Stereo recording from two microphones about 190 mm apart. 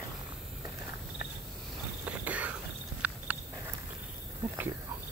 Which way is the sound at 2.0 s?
10° right (ahead or behind).